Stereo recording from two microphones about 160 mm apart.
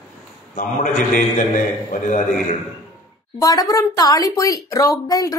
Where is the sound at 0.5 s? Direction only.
55° left (ahead or behind).